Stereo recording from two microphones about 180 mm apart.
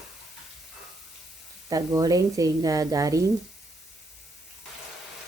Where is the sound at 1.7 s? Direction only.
20° right (ahead or behind).